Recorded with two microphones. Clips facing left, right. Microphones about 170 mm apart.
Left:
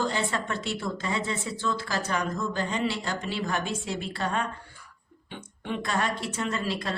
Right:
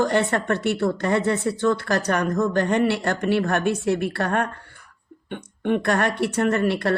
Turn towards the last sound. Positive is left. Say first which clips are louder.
# right 9 dB
turn(degrees=-65)  # may be behind; listen again after turning